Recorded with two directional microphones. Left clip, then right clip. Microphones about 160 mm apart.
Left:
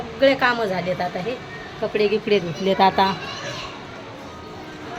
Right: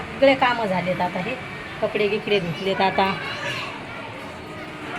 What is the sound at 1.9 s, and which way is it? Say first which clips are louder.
Speech: left 3 dB; 20° left (ahead or behind).